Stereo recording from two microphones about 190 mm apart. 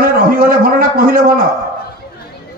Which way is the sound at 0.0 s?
50° right (ahead or behind).